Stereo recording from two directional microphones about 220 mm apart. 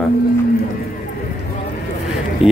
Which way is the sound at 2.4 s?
25° left (ahead or behind).